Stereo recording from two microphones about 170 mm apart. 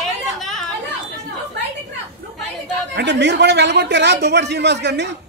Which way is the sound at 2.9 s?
90° right.